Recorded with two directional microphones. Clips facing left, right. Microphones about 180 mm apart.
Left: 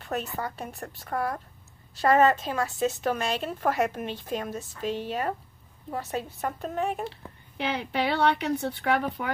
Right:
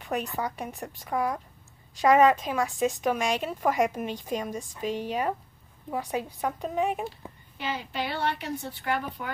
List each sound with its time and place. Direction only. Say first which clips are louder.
0.0 s a woman's voice: right 1 dB; 15° right (ahead or behind)
6.6 s speech: right 1 dB; centre (ahead or behind)
7.5 s a woman's voice: left 4 dB; 65° left (ahead or behind)